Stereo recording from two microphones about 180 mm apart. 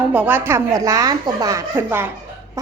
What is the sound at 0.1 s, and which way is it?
A woman's voice, 10° right (ahead or behind).